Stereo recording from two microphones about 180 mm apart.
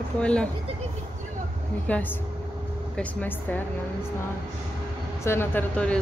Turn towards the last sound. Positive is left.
turn(degrees=10)  # may be behind; listen again after turning